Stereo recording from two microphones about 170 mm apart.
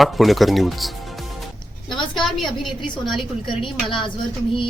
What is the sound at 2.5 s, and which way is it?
A woman's voice, centre (ahead or behind).